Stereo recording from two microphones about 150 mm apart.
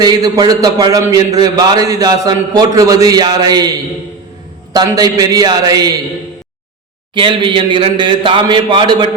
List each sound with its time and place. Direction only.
0.0 s a man's voice: 25° right (ahead or behind)
7.1 s a man's voice: 35° right (ahead or behind)